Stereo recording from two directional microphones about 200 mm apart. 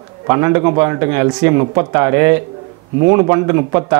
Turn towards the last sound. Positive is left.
turn(degrees=-15)  # may be behind; listen again after turning